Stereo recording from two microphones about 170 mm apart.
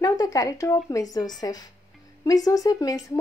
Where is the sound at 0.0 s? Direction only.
20° left (ahead or behind).